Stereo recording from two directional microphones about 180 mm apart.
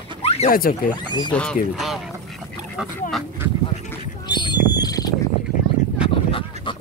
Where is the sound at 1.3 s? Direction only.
5° left (ahead or behind).